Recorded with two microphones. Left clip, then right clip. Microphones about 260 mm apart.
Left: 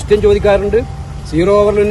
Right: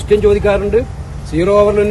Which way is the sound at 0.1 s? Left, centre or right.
Centre.